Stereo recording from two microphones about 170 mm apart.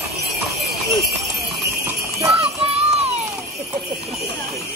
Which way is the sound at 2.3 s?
35° right (ahead or behind).